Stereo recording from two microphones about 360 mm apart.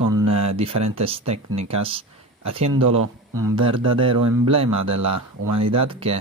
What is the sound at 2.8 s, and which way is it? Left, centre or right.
Speech, right.